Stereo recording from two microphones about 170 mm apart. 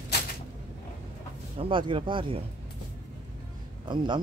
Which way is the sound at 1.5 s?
30° right (ahead or behind).